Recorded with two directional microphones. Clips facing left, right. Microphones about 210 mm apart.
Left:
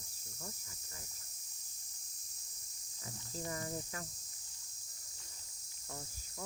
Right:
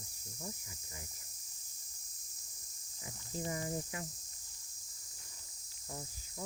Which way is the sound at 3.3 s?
15° right (ahead or behind).